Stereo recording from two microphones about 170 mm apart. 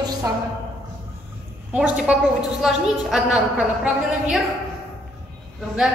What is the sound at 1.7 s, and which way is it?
A woman's voice, 5° right (ahead or behind).